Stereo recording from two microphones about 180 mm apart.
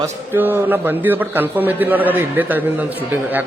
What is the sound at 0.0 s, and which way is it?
A man's voice, 10° right (ahead or behind).